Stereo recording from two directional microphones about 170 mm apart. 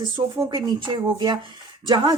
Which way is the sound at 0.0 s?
25° right (ahead or behind).